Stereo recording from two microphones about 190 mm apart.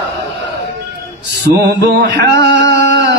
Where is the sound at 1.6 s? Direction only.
60° right (ahead or behind).